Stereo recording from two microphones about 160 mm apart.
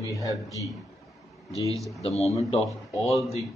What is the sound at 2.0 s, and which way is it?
Speech, 40° left (ahead or behind).